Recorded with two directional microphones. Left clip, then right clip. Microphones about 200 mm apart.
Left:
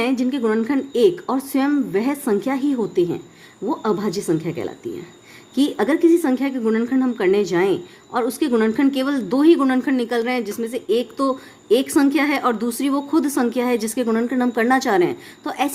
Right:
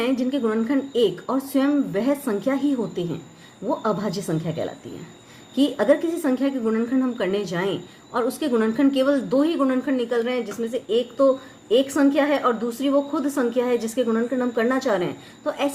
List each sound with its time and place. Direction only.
0.0 s a woman's voice: 40° left (ahead or behind)